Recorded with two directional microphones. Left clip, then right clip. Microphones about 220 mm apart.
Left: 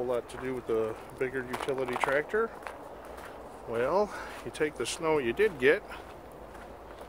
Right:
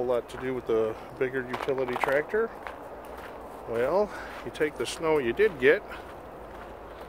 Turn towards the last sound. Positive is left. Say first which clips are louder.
# right 3 dB
turn(degrees=5)  # may be behind; listen again after turning